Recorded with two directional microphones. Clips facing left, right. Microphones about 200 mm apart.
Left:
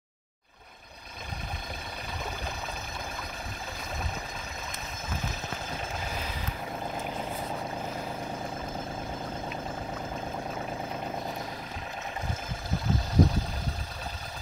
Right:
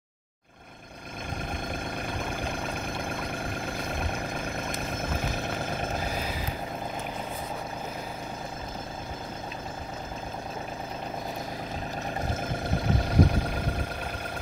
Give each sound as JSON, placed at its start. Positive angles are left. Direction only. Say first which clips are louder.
{"t": 12.8, "sound": "vehicle", "louder": "even", "side_deg": -60}